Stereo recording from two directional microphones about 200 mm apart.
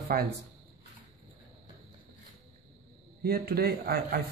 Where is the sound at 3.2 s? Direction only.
50° right (ahead or behind).